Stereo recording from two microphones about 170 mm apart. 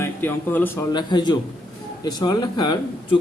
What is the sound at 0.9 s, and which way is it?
Speech, 25° left (ahead or behind).